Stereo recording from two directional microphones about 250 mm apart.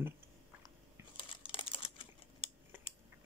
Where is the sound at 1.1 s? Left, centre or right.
Left.